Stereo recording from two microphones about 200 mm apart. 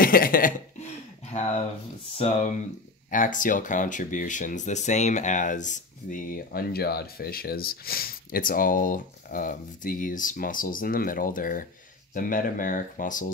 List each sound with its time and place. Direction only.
0.0 s speech: 45° left (ahead or behind)
2.1 s speech: 35° left (ahead or behind)